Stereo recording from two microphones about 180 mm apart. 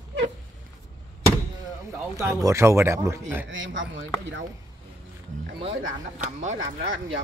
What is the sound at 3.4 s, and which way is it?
Speech, 90° right.